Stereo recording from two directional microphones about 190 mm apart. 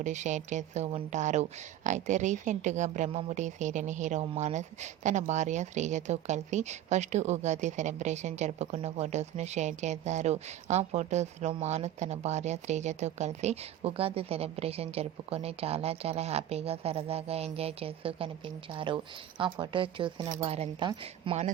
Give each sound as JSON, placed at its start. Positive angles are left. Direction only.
{"t": 0.0, "sound": "a woman's voice", "side_deg": -40}